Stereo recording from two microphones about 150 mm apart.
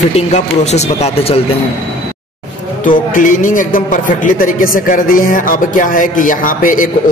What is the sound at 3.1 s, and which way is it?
A man's voice, 65° left (ahead or behind).